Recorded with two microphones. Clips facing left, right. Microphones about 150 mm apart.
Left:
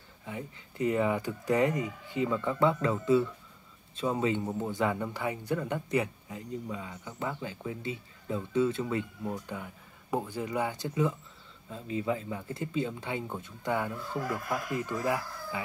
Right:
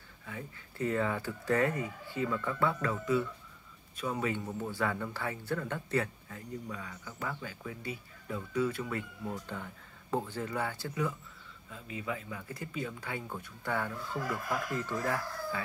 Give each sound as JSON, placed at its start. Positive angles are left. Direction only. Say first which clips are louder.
{"t": 0.2, "sound": "speech", "louder": "left 4 dB", "side_deg": 20}